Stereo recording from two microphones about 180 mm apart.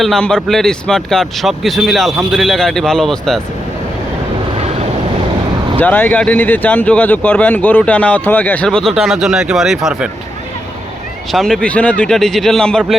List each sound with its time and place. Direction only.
0.0 s speech: 5° left (ahead or behind)
5.8 s speech: 10° left (ahead or behind)
11.3 s speech: centre (ahead or behind)